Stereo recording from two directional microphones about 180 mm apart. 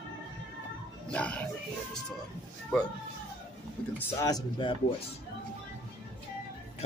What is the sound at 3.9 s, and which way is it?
Speech, 20° left (ahead or behind).